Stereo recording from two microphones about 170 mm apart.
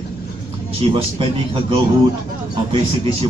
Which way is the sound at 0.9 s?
30° right (ahead or behind).